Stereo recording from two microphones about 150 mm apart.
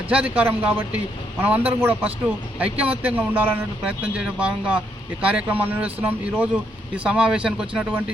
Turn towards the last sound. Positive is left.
turn(degrees=-5)  # may be behind; listen again after turning